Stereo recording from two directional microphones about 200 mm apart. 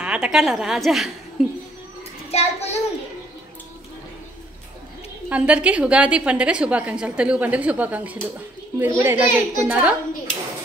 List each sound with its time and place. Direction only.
0.0 s a woman's voice: 5° right (ahead or behind)
2.3 s child singing: 30° left (ahead or behind)
5.3 s a woman's voice: 5° right (ahead or behind)